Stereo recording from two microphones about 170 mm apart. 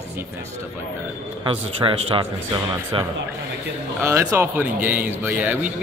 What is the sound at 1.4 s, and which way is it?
Speech, 30° right (ahead or behind).